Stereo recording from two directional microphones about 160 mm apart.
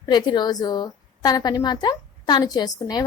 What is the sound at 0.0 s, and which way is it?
A woman's voice, 25° left (ahead or behind).